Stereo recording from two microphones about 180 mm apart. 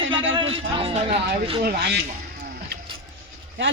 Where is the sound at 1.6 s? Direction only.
65° right (ahead or behind).